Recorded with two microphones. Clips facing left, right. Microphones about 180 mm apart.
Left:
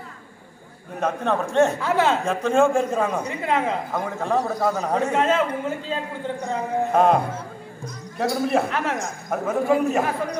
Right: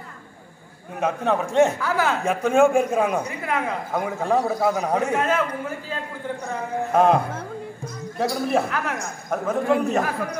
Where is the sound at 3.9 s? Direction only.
10° right (ahead or behind).